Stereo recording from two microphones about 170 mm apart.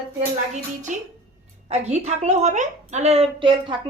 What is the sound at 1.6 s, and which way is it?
A woman's voice, 40° right (ahead or behind).